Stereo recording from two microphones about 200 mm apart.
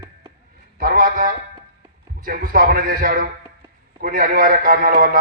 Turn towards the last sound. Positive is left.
turn(degrees=-45)  # may be behind; listen again after turning